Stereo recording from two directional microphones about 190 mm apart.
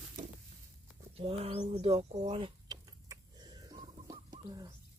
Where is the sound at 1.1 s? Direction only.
30° right (ahead or behind).